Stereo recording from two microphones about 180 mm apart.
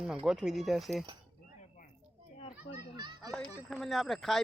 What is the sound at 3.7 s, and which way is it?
Speech, centre (ahead or behind).